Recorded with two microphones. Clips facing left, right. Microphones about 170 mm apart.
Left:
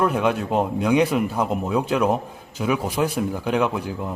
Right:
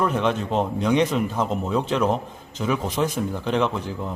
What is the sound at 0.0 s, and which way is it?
A man's voice, 5° left (ahead or behind).